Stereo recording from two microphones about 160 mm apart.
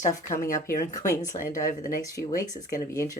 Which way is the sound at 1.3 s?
55° left (ahead or behind).